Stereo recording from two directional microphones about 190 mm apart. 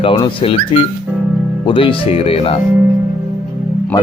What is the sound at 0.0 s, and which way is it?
Speech, 25° left (ahead or behind).